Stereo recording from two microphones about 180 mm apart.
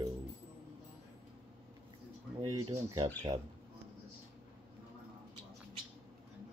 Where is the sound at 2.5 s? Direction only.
20° right (ahead or behind).